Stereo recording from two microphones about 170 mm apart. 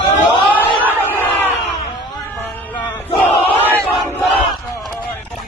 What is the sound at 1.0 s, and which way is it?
Crowd, 10° left (ahead or behind).